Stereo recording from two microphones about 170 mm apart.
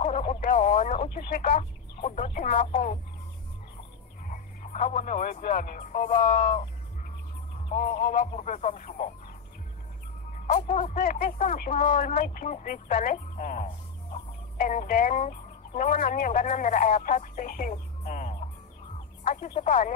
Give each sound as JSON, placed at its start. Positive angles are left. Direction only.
{"t": 0.0, "sound": "radio", "side_deg": 40}
{"t": 1.1, "sound": "a sound", "side_deg": 55}
{"t": 1.6, "sound": "a sound", "side_deg": 40}
{"t": 4.3, "sound": "speech", "side_deg": 50}
{"t": 7.7, "sound": "speech", "side_deg": 45}
{"t": 10.3, "sound": "speech", "side_deg": 45}